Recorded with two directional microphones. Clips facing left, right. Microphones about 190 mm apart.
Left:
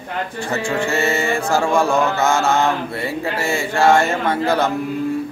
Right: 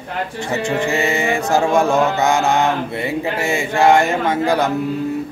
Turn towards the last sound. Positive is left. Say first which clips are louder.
# right 1 dB
turn(degrees=-15)  # may be behind; listen again after turning